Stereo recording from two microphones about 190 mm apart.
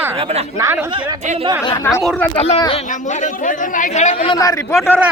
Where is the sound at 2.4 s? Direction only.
30° left (ahead or behind).